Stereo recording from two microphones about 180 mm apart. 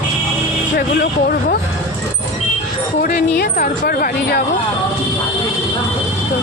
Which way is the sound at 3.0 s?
55° left (ahead or behind).